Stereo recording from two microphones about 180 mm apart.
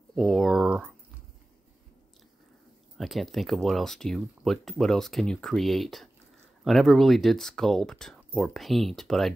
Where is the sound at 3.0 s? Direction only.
Centre (ahead or behind).